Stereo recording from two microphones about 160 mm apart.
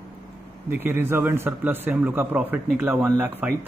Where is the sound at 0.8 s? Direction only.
15° right (ahead or behind).